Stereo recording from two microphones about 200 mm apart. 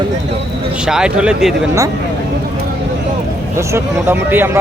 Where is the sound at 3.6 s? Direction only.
15° right (ahead or behind).